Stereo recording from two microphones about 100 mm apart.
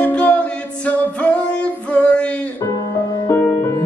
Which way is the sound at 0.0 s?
15° left (ahead or behind).